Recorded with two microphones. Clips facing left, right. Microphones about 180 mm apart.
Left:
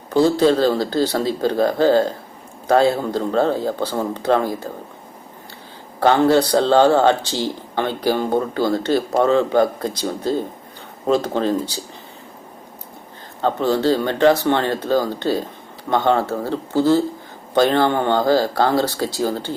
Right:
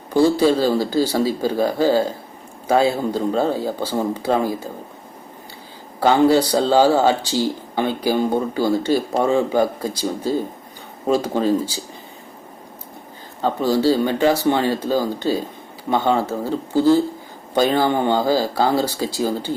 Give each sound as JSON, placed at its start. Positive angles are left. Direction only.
{"t": 0.1, "sound": "speech", "side_deg": -10}
{"t": 6.0, "sound": "speech", "side_deg": -10}
{"t": 13.4, "sound": "speech", "side_deg": -10}